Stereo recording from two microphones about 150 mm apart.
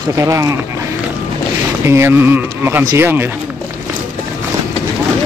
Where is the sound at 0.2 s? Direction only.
20° right (ahead or behind).